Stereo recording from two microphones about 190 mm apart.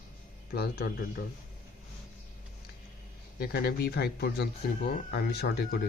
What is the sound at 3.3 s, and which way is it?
Speech, 55° left (ahead or behind).